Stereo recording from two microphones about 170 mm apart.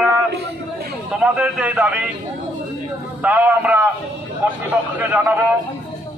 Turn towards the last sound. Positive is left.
turn(degrees=-10)  # may be behind; listen again after turning